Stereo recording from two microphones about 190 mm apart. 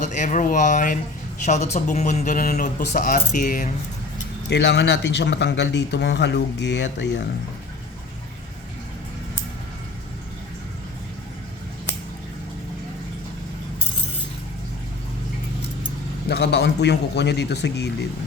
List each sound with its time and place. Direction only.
0.0 s speech: 40° left (ahead or behind)
4.4 s speech: 65° left (ahead or behind)
16.3 s speech: 60° left (ahead or behind)